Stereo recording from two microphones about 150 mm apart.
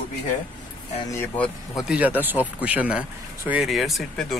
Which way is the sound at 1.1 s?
15° left (ahead or behind).